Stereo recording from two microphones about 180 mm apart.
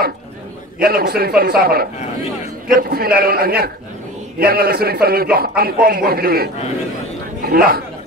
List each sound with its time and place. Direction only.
0.7 s a man's voice: 55° right (ahead or behind)